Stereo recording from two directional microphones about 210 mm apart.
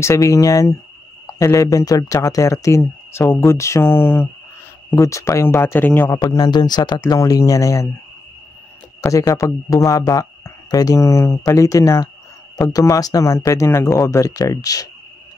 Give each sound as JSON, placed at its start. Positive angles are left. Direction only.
{"t": 0.0, "sound": "a man's voice", "side_deg": 15}
{"t": 9.0, "sound": "a man's voice", "side_deg": 15}